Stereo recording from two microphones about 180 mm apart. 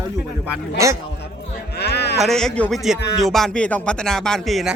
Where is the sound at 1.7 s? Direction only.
65° left (ahead or behind).